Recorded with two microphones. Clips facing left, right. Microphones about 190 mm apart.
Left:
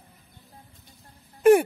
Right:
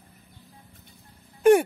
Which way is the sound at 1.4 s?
Centre (ahead or behind).